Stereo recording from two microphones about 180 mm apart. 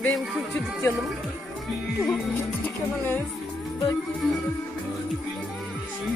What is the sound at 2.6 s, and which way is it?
Speech, 10° left (ahead or behind).